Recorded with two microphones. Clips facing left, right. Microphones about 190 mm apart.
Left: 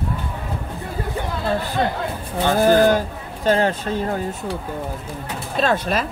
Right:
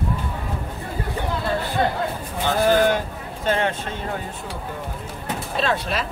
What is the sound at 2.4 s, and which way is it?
Speech, 45° left (ahead or behind).